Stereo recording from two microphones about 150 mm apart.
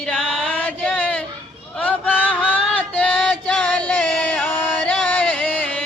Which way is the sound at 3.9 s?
5° left (ahead or behind).